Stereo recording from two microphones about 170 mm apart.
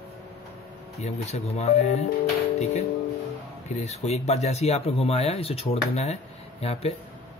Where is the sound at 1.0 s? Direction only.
40° left (ahead or behind).